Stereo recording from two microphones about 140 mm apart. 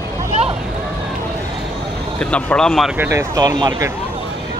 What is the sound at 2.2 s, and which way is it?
Speech, 5° left (ahead or behind).